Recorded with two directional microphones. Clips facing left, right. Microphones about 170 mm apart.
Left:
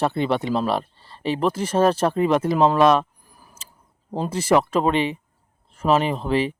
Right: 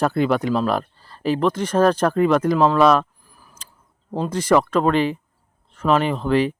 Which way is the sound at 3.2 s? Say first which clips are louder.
Even; 15° left (ahead or behind).